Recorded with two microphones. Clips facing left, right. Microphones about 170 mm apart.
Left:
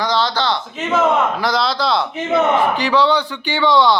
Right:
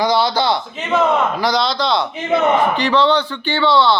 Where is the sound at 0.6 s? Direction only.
Centre (ahead or behind).